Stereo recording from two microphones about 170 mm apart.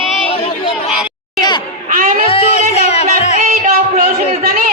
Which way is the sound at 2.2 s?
35° left (ahead or behind).